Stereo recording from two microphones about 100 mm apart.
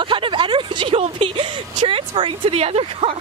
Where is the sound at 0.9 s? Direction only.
70° right (ahead or behind).